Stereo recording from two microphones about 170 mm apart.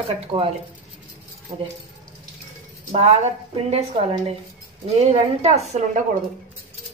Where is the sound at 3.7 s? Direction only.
35° right (ahead or behind).